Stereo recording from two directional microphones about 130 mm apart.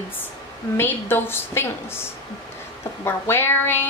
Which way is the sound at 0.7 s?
15° left (ahead or behind).